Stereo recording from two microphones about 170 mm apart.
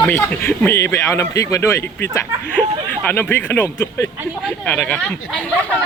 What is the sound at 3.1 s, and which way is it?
Speech, 10° left (ahead or behind).